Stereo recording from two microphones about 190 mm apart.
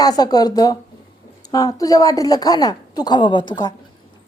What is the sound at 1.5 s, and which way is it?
A woman's voice, 20° left (ahead or behind).